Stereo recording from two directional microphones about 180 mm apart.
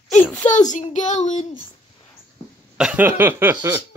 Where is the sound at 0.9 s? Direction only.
40° left (ahead or behind).